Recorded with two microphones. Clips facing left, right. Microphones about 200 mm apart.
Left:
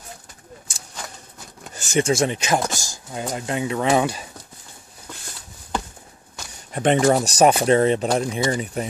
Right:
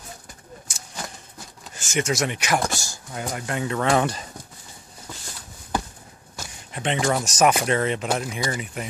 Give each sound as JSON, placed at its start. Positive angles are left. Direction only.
{"t": 1.8, "sound": "speech", "side_deg": 35}
{"t": 3.8, "sound": "speech", "side_deg": 5}
{"t": 6.7, "sound": "a sound", "side_deg": 45}
{"t": 7.1, "sound": "speech", "side_deg": 35}